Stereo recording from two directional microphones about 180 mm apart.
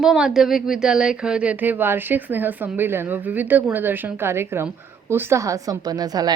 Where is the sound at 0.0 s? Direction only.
5° right (ahead or behind).